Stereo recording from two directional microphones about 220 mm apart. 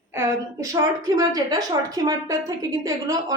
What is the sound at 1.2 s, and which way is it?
A woman's voice, 15° right (ahead or behind).